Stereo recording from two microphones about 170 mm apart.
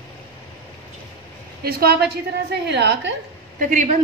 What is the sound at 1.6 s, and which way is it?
Speech, 65° right (ahead or behind).